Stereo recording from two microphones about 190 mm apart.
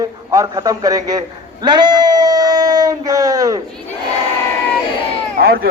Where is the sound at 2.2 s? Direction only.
20° right (ahead or behind).